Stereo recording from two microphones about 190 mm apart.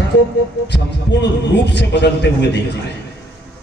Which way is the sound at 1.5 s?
65° left (ahead or behind).